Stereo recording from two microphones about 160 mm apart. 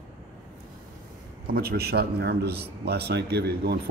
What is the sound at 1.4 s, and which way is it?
A man's voice, 75° right (ahead or behind).